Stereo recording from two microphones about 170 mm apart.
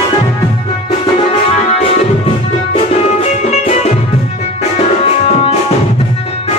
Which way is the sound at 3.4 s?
40° left (ahead or behind).